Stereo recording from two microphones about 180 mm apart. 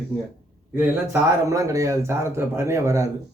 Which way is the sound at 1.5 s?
20° right (ahead or behind).